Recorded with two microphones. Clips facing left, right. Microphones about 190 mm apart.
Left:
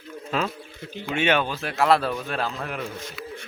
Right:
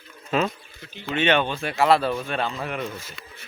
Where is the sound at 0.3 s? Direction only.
5° right (ahead or behind).